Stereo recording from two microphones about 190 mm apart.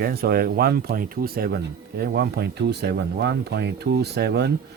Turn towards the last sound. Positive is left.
turn(degrees=-60)  # may be behind; listen again after turning